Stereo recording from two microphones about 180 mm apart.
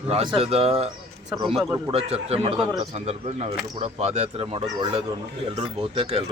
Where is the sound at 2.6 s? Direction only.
25° right (ahead or behind).